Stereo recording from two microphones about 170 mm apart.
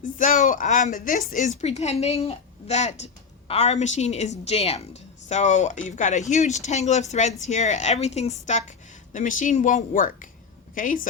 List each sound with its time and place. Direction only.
0.0 s a woman's voice: 50° left (ahead or behind)